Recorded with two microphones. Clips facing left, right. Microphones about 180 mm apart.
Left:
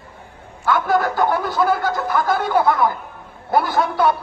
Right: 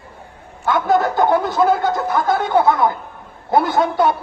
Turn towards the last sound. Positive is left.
turn(degrees=-25)  # may be behind; listen again after turning